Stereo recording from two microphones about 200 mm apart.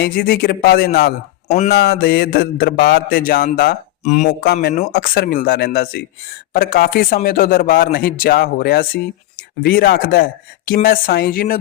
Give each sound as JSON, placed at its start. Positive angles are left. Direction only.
{"t": 0.0, "sound": "mantra", "side_deg": 50}
{"t": 1.5, "sound": "speech", "side_deg": 35}
{"t": 1.7, "sound": "mantra", "side_deg": 55}
{"t": 4.0, "sound": "speech", "side_deg": 35}
{"t": 4.3, "sound": "mantra", "side_deg": 50}